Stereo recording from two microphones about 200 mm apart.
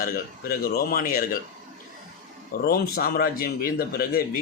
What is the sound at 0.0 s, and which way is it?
A man's voice, 45° left (ahead or behind).